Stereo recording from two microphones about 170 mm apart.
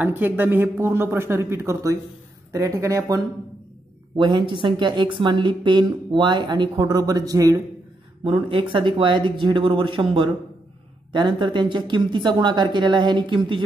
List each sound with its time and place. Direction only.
0.0 s a man's voice: 10° right (ahead or behind)
4.2 s speech: 30° right (ahead or behind)